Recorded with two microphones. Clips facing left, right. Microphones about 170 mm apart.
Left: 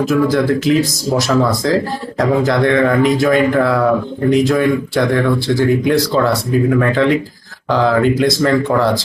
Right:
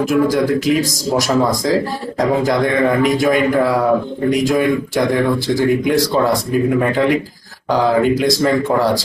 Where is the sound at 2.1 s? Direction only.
20° right (ahead or behind).